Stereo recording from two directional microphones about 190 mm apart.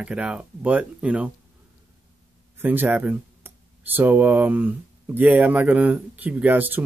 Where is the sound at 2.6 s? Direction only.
10° right (ahead or behind).